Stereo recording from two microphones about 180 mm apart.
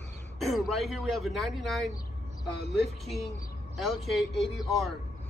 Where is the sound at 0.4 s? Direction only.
Centre (ahead or behind).